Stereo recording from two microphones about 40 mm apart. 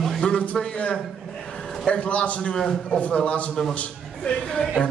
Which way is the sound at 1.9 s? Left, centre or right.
Left.